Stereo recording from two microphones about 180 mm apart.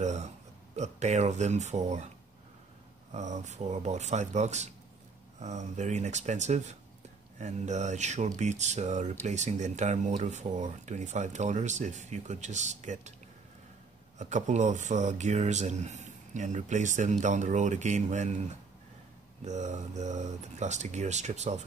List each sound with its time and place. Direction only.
0.0 s burping: 40° right (ahead or behind)
0.7 s speech: 40° right (ahead or behind)
3.1 s speech: 40° right (ahead or behind)
14.1 s speech: 40° right (ahead or behind)
19.4 s speech: 40° right (ahead or behind)